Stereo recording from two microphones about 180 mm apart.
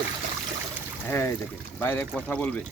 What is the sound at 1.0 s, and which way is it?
Speech, 15° left (ahead or behind).